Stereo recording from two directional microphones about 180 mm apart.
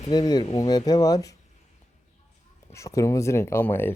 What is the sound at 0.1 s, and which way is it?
Speech, 25° left (ahead or behind).